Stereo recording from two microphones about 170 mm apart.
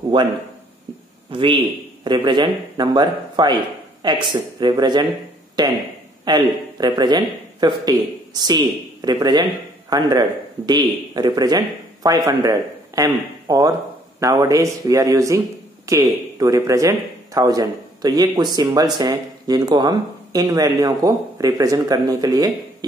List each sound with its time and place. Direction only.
0.1 s speech: 30° right (ahead or behind)
1.3 s a man's voice: 30° right (ahead or behind)